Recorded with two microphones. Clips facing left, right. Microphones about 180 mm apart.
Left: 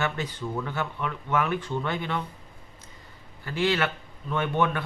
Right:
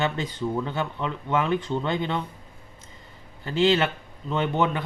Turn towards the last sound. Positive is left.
turn(degrees=-20)  # may be behind; listen again after turning